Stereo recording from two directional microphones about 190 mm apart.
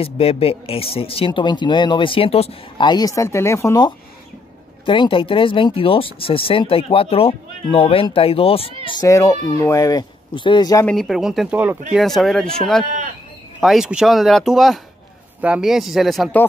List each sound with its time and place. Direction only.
0.0 s speech: 30° left (ahead or behind)
9.0 s speech: 15° left (ahead or behind)
10.9 s speech: centre (ahead or behind)
12.8 s speech: 40° right (ahead or behind)
13.6 s speech: centre (ahead or behind)